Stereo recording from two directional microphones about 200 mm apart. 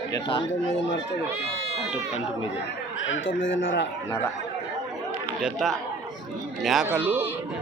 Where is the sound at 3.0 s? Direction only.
70° left (ahead or behind).